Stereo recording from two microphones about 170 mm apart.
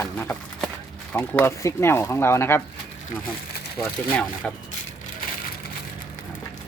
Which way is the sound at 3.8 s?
15° left (ahead or behind).